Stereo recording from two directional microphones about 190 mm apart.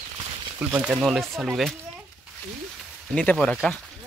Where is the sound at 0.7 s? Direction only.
5° right (ahead or behind).